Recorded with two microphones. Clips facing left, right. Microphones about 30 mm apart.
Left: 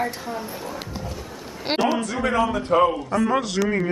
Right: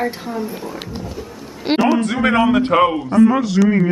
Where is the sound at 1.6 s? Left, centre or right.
Centre.